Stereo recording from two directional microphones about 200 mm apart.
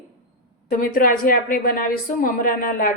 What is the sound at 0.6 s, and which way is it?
A woman's voice, 45° left (ahead or behind).